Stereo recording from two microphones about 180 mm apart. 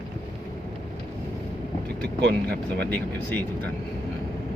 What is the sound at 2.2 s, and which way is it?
Speech, 65° right (ahead or behind).